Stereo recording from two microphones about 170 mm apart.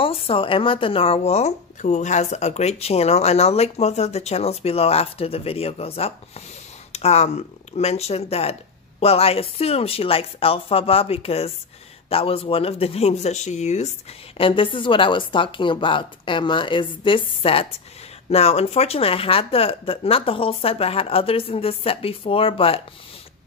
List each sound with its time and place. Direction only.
0.0 s speech: 30° left (ahead or behind)